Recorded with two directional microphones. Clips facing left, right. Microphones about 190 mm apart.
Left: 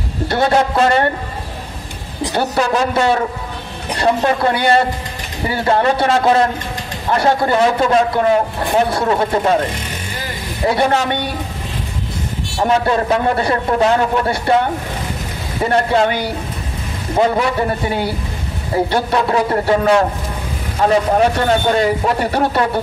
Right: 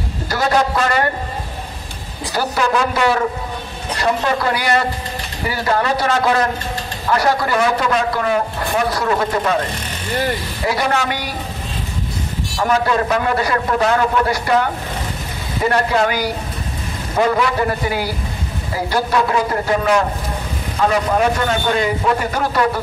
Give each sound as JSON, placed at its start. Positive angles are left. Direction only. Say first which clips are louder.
{"t": 0.3, "sound": "a man's voice", "louder": "left 2 dB", "side_deg": 30}
{"t": 2.9, "sound": "a man's voice", "louder": "left 1 dB", "side_deg": 30}
{"t": 10.6, "sound": "a man's voice", "louder": "left 5 dB", "side_deg": 30}
{"t": 12.5, "sound": "a man's voice", "louder": "left 2 dB", "side_deg": 30}
{"t": 15.7, "sound": "a man's voice", "louder": "left 3 dB", "side_deg": 30}
{"t": 17.4, "sound": "a man's voice", "louder": "left 1 dB", "side_deg": 25}